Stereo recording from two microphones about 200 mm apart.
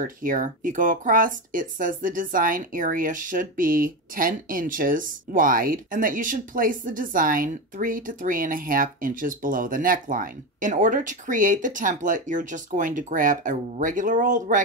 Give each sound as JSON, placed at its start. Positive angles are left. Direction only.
{"t": 0.0, "sound": "speech", "side_deg": -45}